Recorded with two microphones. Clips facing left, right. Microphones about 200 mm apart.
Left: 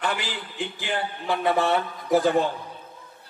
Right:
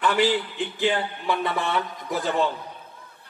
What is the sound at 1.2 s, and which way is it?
A man's voice, 55° left (ahead or behind).